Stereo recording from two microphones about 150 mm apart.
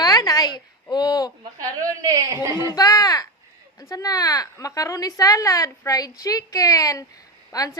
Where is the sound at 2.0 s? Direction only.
25° right (ahead or behind).